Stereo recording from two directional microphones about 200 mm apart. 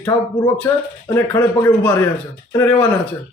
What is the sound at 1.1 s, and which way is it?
Speech, 15° left (ahead or behind).